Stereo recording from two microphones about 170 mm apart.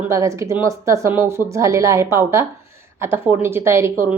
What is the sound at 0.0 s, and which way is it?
Speech, 15° right (ahead or behind).